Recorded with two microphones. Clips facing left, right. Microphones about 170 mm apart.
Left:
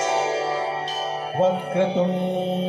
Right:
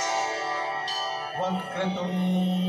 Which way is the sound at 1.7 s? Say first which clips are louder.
Left 9 dB; 50° left (ahead or behind).